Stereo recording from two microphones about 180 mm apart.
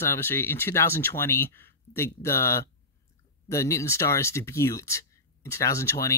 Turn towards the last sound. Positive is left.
turn(degrees=15)  # may be behind; listen again after turning